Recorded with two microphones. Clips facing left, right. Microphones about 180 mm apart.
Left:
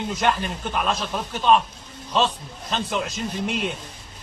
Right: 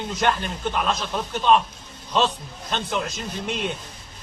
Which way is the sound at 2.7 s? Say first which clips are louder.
Left 1 dB; centre (ahead or behind).